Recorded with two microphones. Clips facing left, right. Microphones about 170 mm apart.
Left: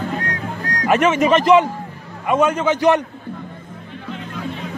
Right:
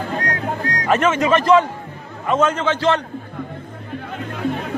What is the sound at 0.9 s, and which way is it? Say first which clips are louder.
Speech: left 2 dB; 15° left (ahead or behind).